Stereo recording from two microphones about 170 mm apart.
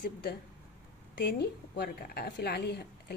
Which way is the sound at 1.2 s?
70° left (ahead or behind).